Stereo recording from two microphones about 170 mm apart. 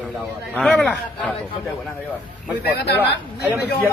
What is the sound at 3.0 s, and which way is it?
Speech, 10° right (ahead or behind).